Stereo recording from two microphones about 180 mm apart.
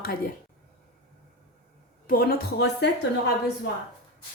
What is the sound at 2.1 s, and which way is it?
Speech, 55° left (ahead or behind).